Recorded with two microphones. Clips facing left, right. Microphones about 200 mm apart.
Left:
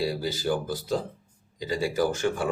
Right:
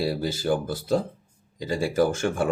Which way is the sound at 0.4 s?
50° right (ahead or behind).